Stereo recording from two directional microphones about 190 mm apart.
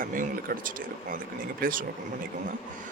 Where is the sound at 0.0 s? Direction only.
45° right (ahead or behind).